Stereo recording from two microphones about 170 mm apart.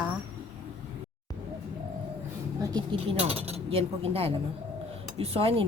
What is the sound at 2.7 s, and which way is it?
Speech, 35° right (ahead or behind).